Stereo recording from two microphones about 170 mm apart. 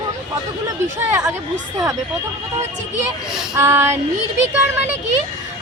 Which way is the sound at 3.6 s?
15° right (ahead or behind).